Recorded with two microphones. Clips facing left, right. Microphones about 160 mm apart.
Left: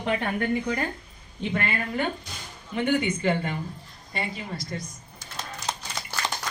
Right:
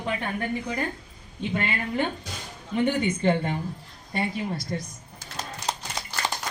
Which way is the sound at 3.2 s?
30° right (ahead or behind).